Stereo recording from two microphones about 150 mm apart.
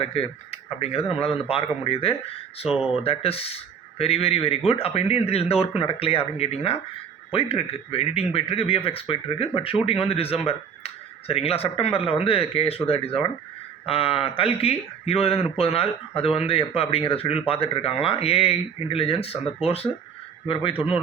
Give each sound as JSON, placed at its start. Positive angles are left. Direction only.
{"t": 0.0, "sound": "speech", "side_deg": 40}
{"t": 2.6, "sound": "speech", "side_deg": -5}
{"t": 3.0, "sound": "speech", "side_deg": 40}